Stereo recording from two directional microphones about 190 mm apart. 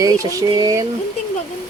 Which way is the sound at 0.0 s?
20° right (ahead or behind).